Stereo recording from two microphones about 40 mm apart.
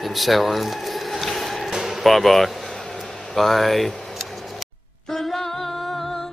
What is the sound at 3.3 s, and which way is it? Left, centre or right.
Speech, centre.